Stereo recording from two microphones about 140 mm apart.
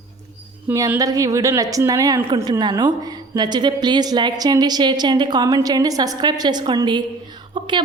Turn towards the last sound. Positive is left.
turn(degrees=-35)  # may be behind; listen again after turning